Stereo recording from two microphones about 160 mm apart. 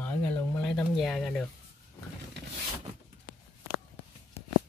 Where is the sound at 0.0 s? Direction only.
10° left (ahead or behind).